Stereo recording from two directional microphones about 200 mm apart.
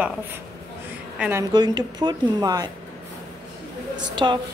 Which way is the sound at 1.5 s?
20° right (ahead or behind).